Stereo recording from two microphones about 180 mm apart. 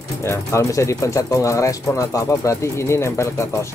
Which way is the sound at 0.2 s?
15° left (ahead or behind).